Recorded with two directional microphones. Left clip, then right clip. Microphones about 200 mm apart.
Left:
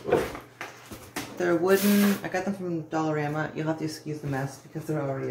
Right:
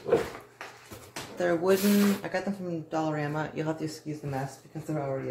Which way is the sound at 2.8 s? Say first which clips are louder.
Left 2 dB; 35° right (ahead or behind).